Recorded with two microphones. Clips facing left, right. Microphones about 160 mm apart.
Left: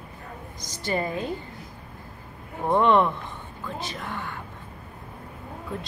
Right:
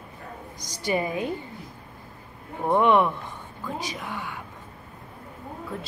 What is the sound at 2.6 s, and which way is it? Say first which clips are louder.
Speech: even; 10° right (ahead or behind).